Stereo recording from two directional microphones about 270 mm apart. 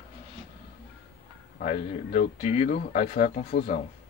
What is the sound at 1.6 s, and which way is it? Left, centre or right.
Speech, left.